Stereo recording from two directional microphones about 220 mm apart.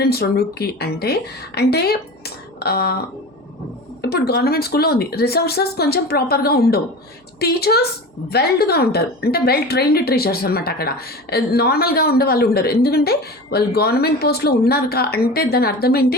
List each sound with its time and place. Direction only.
0.0 s a woman's voice: 45° left (ahead or behind)
4.0 s a woman's voice: 45° left (ahead or behind)